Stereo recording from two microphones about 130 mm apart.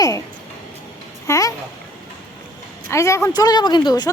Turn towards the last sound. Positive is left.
turn(degrees=35)  # may be behind; listen again after turning